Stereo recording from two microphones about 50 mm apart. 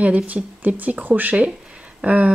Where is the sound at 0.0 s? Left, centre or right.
Right.